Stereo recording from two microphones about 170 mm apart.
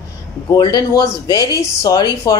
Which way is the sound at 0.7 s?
20° left (ahead or behind).